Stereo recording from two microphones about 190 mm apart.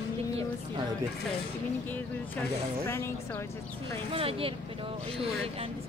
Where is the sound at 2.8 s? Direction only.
15° left (ahead or behind).